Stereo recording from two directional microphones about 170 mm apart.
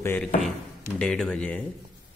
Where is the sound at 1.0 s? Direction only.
5° left (ahead or behind).